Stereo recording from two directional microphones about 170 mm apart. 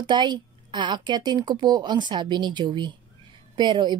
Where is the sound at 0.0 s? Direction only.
25° right (ahead or behind).